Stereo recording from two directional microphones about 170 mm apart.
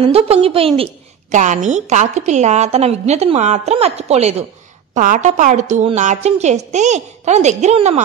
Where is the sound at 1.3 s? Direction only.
45° right (ahead or behind).